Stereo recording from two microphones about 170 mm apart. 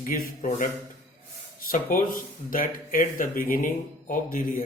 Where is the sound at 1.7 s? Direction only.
55° left (ahead or behind).